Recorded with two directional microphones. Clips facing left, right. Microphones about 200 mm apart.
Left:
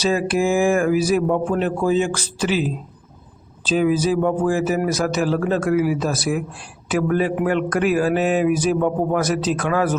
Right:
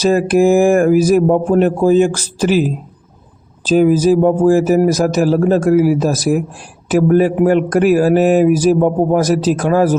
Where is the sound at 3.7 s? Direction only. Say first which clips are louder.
Right 7 dB; 45° right (ahead or behind).